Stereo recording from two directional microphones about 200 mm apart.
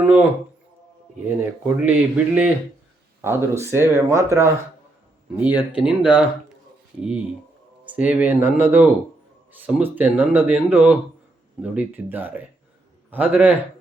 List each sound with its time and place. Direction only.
0.0 s speech: 10° right (ahead or behind)
5.7 s speech: 5° right (ahead or behind)
7.9 s speech: 5° right (ahead or behind)